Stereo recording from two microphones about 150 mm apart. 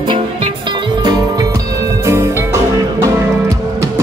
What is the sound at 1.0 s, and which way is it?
Music, 25° right (ahead or behind).